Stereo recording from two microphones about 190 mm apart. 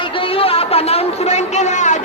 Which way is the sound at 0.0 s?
30° left (ahead or behind).